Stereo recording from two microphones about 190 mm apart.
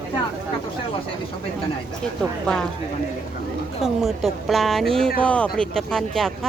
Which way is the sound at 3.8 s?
Centre (ahead or behind).